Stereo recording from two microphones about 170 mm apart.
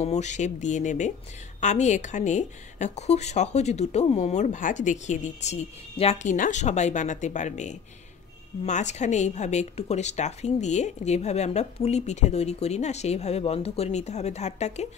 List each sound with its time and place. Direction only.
0.0 s a woman's voice: 40° left (ahead or behind)